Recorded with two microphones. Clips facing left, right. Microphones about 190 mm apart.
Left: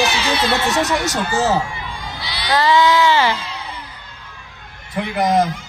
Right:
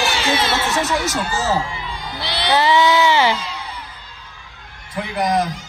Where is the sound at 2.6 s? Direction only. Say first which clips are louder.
Left 2 dB; 20° right (ahead or behind).